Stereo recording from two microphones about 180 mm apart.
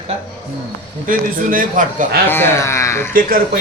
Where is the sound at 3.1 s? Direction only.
50° right (ahead or behind).